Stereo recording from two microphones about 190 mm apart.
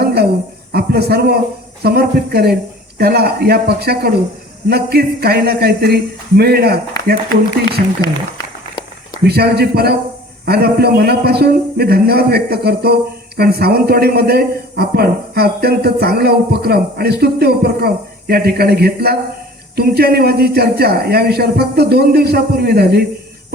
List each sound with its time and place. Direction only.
0.0 s a sound: 55° right (ahead or behind)
0.7 s a man's voice: 60° right (ahead or behind)
9.2 s a man's voice: 55° right (ahead or behind)